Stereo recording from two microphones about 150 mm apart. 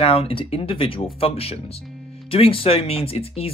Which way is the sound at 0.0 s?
40° left (ahead or behind).